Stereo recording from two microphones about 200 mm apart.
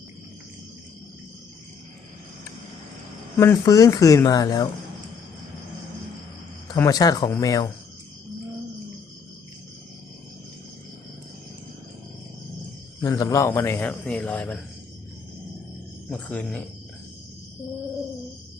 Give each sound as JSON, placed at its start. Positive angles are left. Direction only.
{"t": 3.3, "sound": "a man's voice", "side_deg": 15}
{"t": 6.7, "sound": "a man's voice", "side_deg": 20}
{"t": 13.0, "sound": "a man's voice", "side_deg": 20}
{"t": 16.0, "sound": "a man's voice", "side_deg": 5}